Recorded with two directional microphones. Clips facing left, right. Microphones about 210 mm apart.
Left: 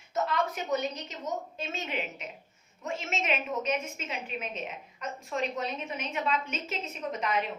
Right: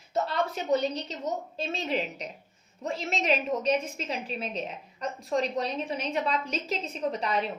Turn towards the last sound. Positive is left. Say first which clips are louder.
# right 3 dB
turn(degrees=-35)  # may be behind; listen again after turning